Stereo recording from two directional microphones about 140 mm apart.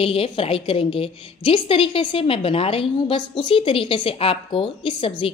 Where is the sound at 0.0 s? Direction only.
40° left (ahead or behind).